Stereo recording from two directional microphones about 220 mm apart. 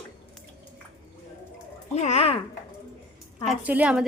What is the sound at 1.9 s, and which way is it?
Speech, 30° left (ahead or behind).